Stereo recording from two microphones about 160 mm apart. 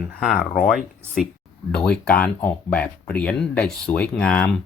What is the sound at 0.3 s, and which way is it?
Speech, 60° left (ahead or behind).